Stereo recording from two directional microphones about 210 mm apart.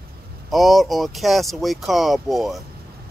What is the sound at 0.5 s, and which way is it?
Speech, centre (ahead or behind).